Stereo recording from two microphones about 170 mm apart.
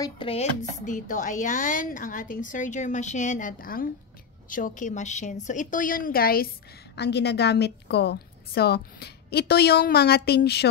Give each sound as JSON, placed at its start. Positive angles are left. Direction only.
{"t": 0.0, "sound": "a woman's voice", "side_deg": 30}